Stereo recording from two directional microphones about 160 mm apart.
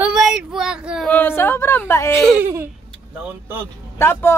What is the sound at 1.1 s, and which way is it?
Speech, 15° left (ahead or behind).